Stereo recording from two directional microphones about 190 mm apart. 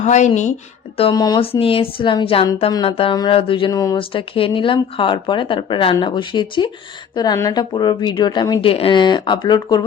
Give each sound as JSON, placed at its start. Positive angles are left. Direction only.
{"t": 0.0, "sound": "a woman's voice", "side_deg": 40}
{"t": 0.9, "sound": "speech", "side_deg": 25}